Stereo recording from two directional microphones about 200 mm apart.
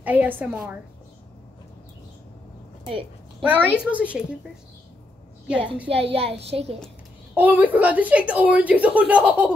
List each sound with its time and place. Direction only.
0.0 s a woman's voice: 10° right (ahead or behind)
2.9 s a sound: 25° right (ahead or behind)
3.4 s a woman's voice: 10° right (ahead or behind)
5.9 s a child's voice: 30° right (ahead or behind)
7.3 s a woman's voice: 10° right (ahead or behind)